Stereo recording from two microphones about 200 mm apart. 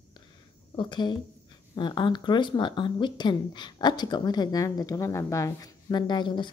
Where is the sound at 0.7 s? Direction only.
25° left (ahead or behind).